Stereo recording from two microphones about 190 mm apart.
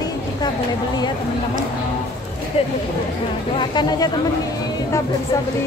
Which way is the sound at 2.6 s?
35° left (ahead or behind).